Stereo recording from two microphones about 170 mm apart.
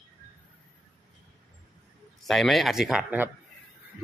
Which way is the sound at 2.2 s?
Centre (ahead or behind).